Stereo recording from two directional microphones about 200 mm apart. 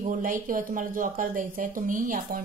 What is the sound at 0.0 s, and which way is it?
A woman's voice, 45° right (ahead or behind).